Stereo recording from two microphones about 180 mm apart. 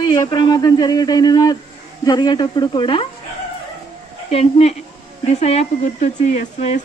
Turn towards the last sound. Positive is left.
turn(degrees=35)  # may be behind; listen again after turning